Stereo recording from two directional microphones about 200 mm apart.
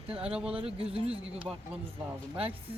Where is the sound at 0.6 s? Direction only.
30° right (ahead or behind).